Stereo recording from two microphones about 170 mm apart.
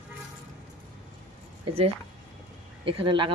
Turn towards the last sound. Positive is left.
turn(degrees=-30)  # may be behind; listen again after turning